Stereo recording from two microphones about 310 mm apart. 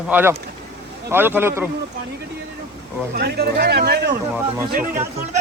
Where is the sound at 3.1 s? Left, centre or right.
Right.